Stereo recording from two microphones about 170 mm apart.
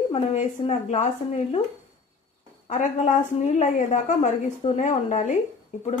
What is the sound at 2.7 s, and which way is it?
A woman's voice, 45° left (ahead or behind).